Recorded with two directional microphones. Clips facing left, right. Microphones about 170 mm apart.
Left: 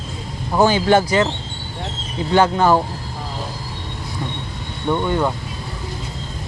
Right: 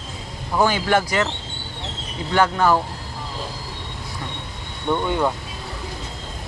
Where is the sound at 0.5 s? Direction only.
30° left (ahead or behind).